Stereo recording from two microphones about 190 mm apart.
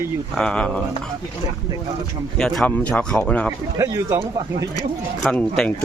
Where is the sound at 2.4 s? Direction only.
5° left (ahead or behind).